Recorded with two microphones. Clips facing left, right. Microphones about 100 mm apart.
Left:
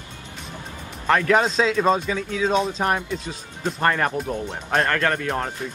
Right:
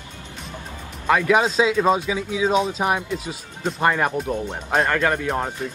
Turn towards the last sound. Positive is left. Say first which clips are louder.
# right 1 dB
turn(degrees=-10)  # may be behind; listen again after turning